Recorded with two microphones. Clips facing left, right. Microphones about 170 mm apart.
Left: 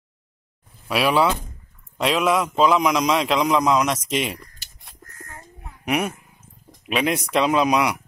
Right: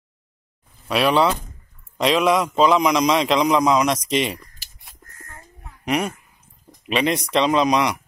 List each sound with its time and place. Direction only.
0.8 s a man's voice: 5° left (ahead or behind)
5.9 s a sound: 5° left (ahead or behind)
7.3 s speech: 5° left (ahead or behind)